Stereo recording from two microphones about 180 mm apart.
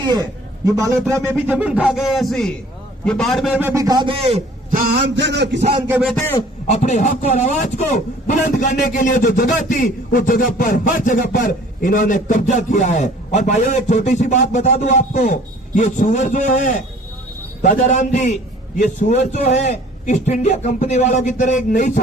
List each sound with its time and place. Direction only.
0.1 s a man's voice: 20° right (ahead or behind)
4.7 s music: 55° right (ahead or behind); by 5.5 s 70° right (ahead or behind)
6.7 s a man's voice: 40° left (ahead or behind)
17.6 s a man's voice: 45° left (ahead or behind)